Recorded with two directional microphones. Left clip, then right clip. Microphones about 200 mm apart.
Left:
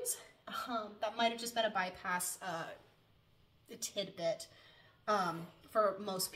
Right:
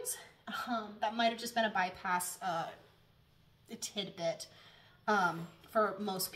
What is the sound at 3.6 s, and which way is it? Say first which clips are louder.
Speech: even; 15° left (ahead or behind).